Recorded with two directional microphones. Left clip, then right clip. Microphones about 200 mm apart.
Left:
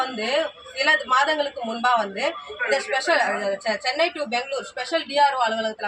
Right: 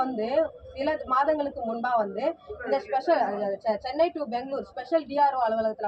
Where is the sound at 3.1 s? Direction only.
35° left (ahead or behind).